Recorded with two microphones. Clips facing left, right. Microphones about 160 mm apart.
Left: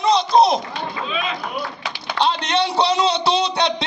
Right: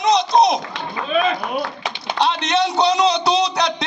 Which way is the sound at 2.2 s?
30° left (ahead or behind).